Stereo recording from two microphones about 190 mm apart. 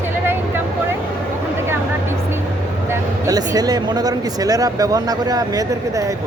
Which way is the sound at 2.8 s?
20° right (ahead or behind).